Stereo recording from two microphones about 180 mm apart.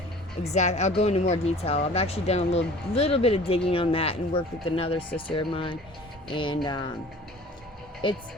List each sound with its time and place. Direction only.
0.4 s speech: 40° left (ahead or behind); by 6.9 s 25° left (ahead or behind)
8.0 s speech: 25° left (ahead or behind)